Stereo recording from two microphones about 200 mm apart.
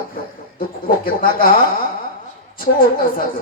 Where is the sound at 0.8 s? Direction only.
45° left (ahead or behind).